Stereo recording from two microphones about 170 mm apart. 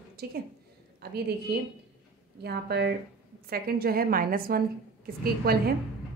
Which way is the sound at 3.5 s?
60° right (ahead or behind).